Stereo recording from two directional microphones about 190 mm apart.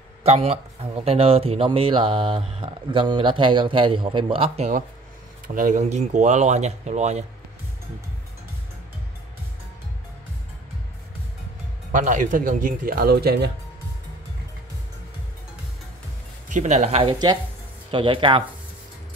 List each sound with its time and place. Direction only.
0.2 s a man's voice: 30° right (ahead or behind)
5.5 s speech: 45° right (ahead or behind)
11.9 s speech: 40° right (ahead or behind)
16.4 s a man's voice: 40° right (ahead or behind)